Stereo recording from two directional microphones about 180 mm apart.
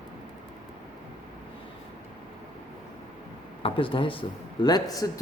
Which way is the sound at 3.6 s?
30° left (ahead or behind).